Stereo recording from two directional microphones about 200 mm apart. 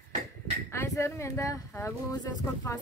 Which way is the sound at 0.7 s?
15° left (ahead or behind).